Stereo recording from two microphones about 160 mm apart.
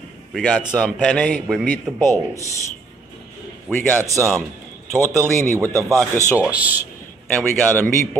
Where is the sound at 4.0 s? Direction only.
20° right (ahead or behind).